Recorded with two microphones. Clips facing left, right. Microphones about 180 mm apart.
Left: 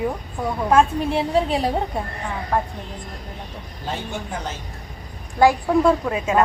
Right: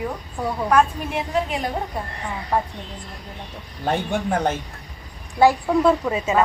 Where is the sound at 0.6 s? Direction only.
30° left (ahead or behind).